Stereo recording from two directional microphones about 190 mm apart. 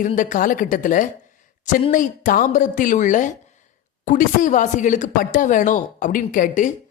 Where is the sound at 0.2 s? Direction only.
45° left (ahead or behind).